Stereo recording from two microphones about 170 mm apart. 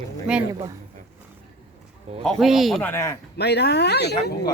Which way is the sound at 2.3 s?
Centre (ahead or behind).